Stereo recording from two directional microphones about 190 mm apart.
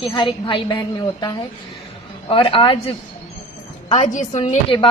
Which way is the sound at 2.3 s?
30° left (ahead or behind).